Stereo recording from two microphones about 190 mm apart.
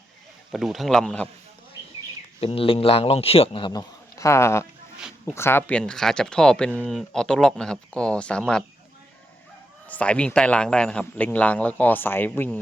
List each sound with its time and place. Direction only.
0.5 s speech: centre (ahead or behind)
2.4 s a man's voice: 30° left (ahead or behind); by 8.6 s 5° left (ahead or behind)
9.8 s a man's voice: 5° left (ahead or behind)